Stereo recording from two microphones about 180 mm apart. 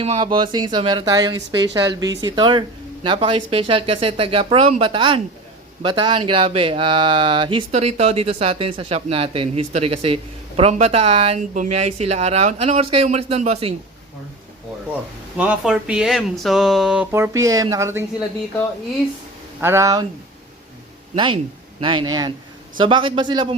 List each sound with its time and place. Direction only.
0.0 s speech: 30° right (ahead or behind)
15.4 s speech: 5° right (ahead or behind)
19.6 s speech: 15° right (ahead or behind)
21.8 s speech: 25° right (ahead or behind)